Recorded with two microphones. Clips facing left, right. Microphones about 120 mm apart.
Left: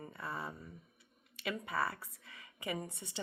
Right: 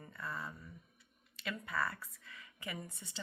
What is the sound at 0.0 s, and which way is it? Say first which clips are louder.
Speech: left 2 dB; 25° left (ahead or behind).